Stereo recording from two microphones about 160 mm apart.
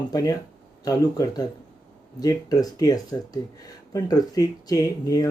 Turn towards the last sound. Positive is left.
turn(degrees=20)  # may be behind; listen again after turning